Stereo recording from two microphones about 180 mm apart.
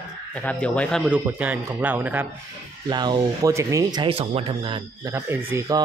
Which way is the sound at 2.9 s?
25° right (ahead or behind).